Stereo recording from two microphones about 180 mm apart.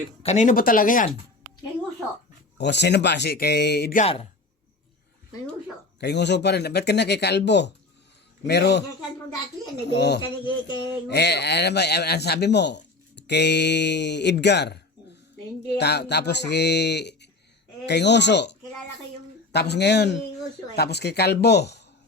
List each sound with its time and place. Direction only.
0.2 s speech: 40° left (ahead or behind)
2.6 s speech: 70° left (ahead or behind)
3.9 s a man's voice: 35° left (ahead or behind)
6.0 s speech: 70° left (ahead or behind)
9.9 s speech: 70° left (ahead or behind)
10.2 s speech: 25° left (ahead or behind)
11.1 s speech: 70° left (ahead or behind)
15.8 s speech: 65° left (ahead or behind)
19.5 s a woman's voice: 70° left (ahead or behind)